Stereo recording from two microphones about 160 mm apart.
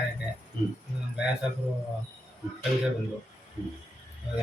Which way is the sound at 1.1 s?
5° right (ahead or behind).